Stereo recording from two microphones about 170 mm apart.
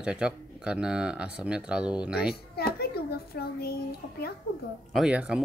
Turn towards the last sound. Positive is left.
turn(degrees=-5)  # may be behind; listen again after turning